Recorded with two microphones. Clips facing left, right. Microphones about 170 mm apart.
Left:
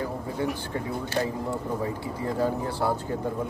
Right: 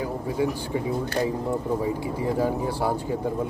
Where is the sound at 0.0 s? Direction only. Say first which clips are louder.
Right 3 dB; 10° right (ahead or behind).